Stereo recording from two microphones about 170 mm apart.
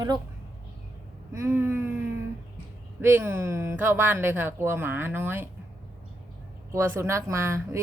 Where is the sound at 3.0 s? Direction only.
15° right (ahead or behind).